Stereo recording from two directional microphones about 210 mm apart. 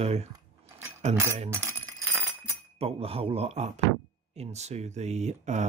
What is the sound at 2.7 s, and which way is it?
Speech, 30° right (ahead or behind).